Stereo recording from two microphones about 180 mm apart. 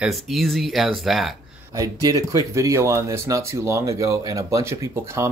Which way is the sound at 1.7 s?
20° right (ahead or behind).